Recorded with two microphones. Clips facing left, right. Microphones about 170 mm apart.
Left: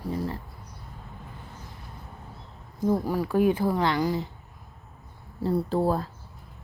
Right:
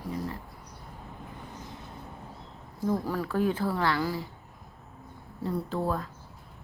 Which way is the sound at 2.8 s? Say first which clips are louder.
Left 4 dB; 15° left (ahead or behind).